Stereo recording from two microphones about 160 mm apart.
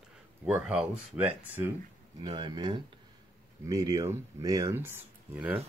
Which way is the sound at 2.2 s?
25° right (ahead or behind).